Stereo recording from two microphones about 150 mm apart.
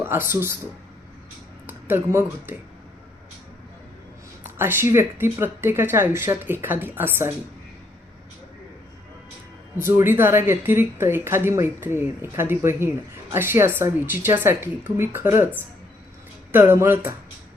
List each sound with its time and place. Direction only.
0.0 s a woman's voice: 15° right (ahead or behind)
1.6 s a sound: 15° right (ahead or behind)
2.5 s a woman's voice: 15° right (ahead or behind)
4.4 s a woman's voice: 15° right (ahead or behind)
9.7 s a woman's voice: 15° right (ahead or behind)
16.5 s a woman's voice: 15° right (ahead or behind)